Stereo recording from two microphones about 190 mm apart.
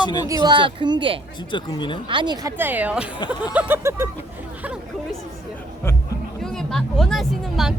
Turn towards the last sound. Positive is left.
turn(degrees=0)  # may be behind; listen again after turning